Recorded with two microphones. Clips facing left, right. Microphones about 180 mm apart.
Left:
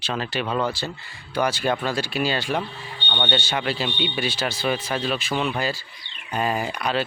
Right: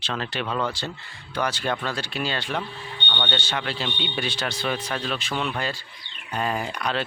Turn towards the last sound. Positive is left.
turn(degrees=5)  # may be behind; listen again after turning